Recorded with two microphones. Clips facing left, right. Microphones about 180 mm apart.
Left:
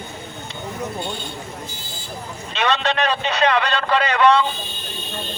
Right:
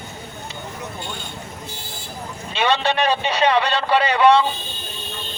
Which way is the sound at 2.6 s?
10° right (ahead or behind).